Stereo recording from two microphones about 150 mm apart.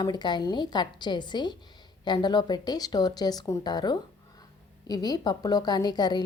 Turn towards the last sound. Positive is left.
turn(degrees=30)  # may be behind; listen again after turning